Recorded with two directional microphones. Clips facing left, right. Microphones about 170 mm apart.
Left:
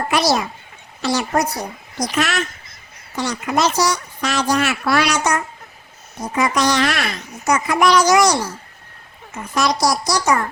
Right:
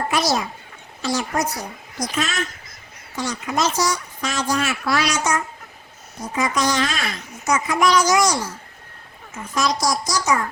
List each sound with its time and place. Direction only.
0.1 s speech: 70° left (ahead or behind)